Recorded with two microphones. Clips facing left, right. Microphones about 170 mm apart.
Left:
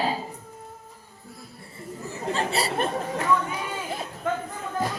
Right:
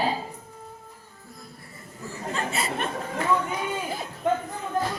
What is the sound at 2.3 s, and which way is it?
Speech, 35° left (ahead or behind).